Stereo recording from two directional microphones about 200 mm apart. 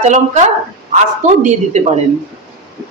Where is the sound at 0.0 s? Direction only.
35° right (ahead or behind).